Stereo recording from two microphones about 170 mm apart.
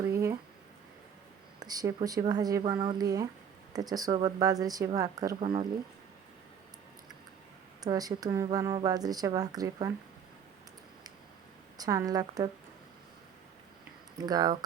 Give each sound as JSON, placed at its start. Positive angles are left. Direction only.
{"t": 1.5, "sound": "a woman's voice", "side_deg": -20}
{"t": 7.8, "sound": "a woman's voice", "side_deg": -20}
{"t": 11.8, "sound": "a woman's voice", "side_deg": -20}
{"t": 14.2, "sound": "a woman's voice", "side_deg": -25}